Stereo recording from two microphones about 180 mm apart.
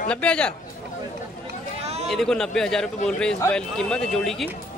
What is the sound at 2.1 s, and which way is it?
Speech, 5° left (ahead or behind).